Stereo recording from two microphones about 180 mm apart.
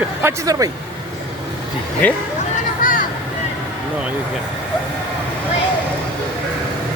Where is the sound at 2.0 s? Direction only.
10° left (ahead or behind).